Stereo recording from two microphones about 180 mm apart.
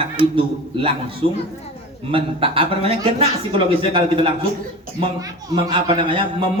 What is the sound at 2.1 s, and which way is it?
A man's voice, 30° right (ahead or behind).